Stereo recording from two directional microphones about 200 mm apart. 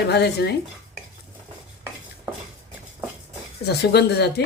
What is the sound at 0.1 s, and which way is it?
Speech, 55° left (ahead or behind).